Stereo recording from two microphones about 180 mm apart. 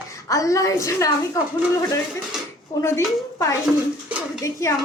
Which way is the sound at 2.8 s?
15° left (ahead or behind).